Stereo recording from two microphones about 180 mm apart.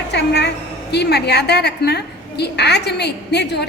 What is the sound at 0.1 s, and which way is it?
A woman's voice, 70° left (ahead or behind).